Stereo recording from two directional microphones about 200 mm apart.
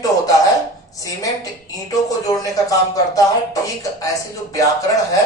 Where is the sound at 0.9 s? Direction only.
15° left (ahead or behind).